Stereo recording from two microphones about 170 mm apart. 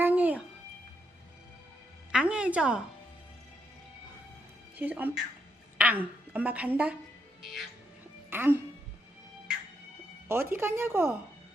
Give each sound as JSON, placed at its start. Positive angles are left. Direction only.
{"t": 0.0, "sound": "music", "side_deg": -10}
{"t": 2.1, "sound": "music", "side_deg": -5}
{"t": 4.8, "sound": "a woman's voice", "side_deg": -10}
{"t": 8.3, "sound": "speech", "side_deg": -10}
{"t": 10.2, "sound": "speech", "side_deg": -15}